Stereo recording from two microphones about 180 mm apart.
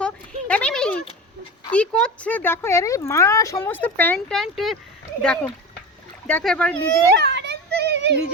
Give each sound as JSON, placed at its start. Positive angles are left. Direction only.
{"t": 0.0, "sound": "a sound", "side_deg": 5}
{"t": 1.7, "sound": "speech", "side_deg": 5}
{"t": 7.2, "sound": "children playing", "side_deg": -70}